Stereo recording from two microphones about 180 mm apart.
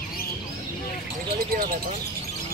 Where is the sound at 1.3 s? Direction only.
55° right (ahead or behind).